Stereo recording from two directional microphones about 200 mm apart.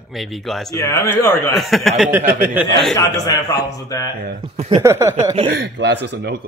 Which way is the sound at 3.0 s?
20° left (ahead or behind).